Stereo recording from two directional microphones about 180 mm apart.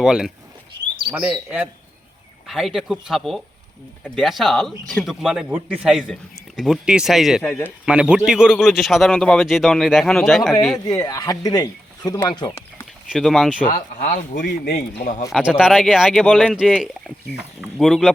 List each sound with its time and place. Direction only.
0.0 s speech: 5° right (ahead or behind)
10.8 s speech: 20° left (ahead or behind)
13.1 s speech: centre (ahead or behind)
13.7 s speech: 45° left (ahead or behind)
15.3 s speech: 5° right (ahead or behind)